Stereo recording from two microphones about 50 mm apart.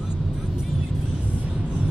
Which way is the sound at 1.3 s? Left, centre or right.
Right.